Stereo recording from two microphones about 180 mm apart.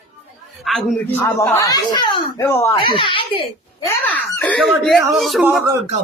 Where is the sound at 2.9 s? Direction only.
30° left (ahead or behind).